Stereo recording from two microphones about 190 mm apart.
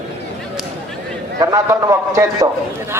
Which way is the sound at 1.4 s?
15° right (ahead or behind).